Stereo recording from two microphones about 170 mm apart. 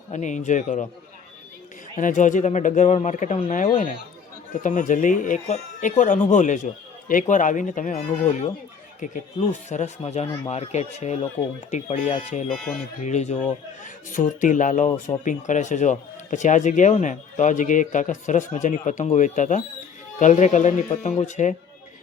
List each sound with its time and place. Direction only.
0.1 s speech: 45° left (ahead or behind)
2.0 s speech: 50° left (ahead or behind)
4.6 s speech: 50° left (ahead or behind)
12.5 s speech: centre (ahead or behind)
13.0 s speech: 40° left (ahead or behind)